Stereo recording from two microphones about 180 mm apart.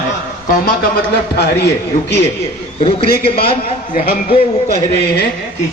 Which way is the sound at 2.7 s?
30° left (ahead or behind).